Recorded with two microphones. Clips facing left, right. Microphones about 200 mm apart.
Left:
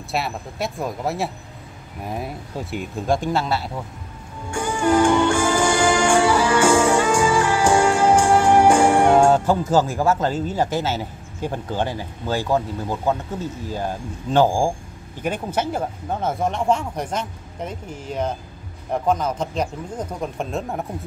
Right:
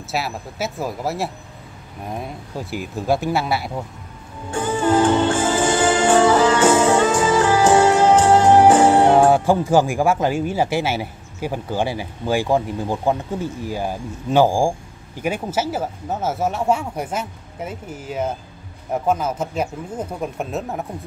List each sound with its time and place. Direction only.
0.1 s speech: centre (ahead or behind)
5.3 s music: 25° right (ahead or behind)
5.8 s music: 10° left (ahead or behind)
6.0 s music: 20° right (ahead or behind)
9.2 s speech: 10° right (ahead or behind)